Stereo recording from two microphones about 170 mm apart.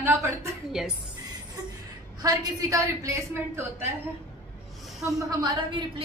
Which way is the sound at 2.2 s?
20° right (ahead or behind).